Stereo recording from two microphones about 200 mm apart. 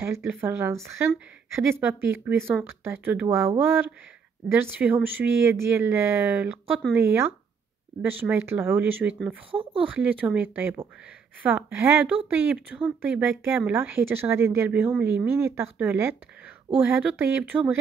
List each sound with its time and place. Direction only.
0.0 s speech: 10° right (ahead or behind)
9.5 s speech: 25° right (ahead or behind)
9.8 s speech: 5° right (ahead or behind)